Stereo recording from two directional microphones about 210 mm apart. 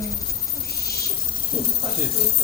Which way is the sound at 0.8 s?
50° left (ahead or behind).